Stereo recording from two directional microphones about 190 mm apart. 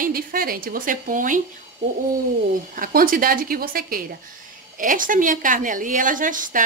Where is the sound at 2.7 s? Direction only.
50° right (ahead or behind).